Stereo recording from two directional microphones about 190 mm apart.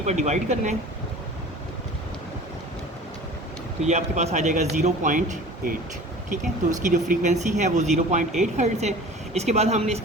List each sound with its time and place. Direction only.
0.0 s speech: 35° right (ahead or behind)
3.8 s speech: 35° right (ahead or behind)